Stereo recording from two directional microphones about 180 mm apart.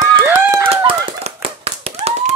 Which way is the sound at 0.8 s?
30° right (ahead or behind).